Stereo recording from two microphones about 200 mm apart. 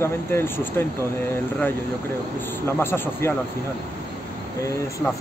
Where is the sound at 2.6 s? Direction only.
10° left (ahead or behind).